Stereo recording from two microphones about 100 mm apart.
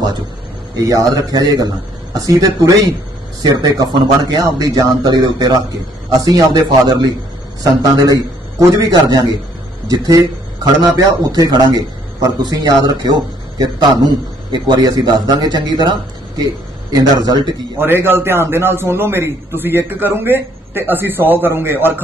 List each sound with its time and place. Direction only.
0.7 s speech: 35° right (ahead or behind)
14.5 s speech: 45° right (ahead or behind)
17.7 s a man's voice: 20° right (ahead or behind)